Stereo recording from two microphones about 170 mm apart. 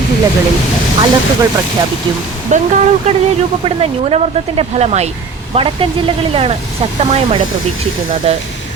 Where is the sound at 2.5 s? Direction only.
45° right (ahead or behind).